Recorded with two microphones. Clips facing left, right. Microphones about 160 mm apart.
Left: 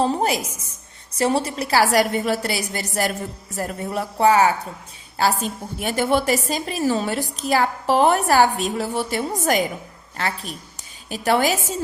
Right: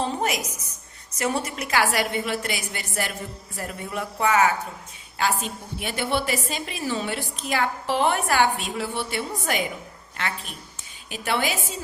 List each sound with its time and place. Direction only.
0.0 s a woman's voice: 35° left (ahead or behind)
5.4 s a woman's voice: 40° left (ahead or behind)